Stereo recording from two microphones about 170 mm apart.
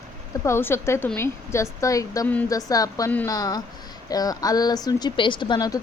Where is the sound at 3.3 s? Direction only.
20° left (ahead or behind).